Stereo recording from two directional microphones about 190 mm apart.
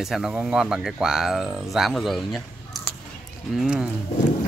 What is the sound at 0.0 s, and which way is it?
Speech, centre (ahead or behind).